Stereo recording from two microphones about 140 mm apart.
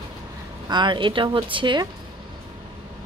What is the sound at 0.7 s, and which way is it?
Speech, 35° right (ahead or behind).